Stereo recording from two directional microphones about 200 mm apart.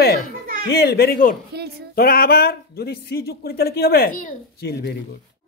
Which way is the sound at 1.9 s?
50° left (ahead or behind).